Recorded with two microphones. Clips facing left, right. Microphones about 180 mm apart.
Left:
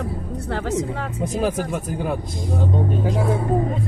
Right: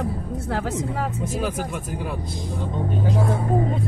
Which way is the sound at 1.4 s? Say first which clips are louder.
Left 4 dB; 40° left (ahead or behind).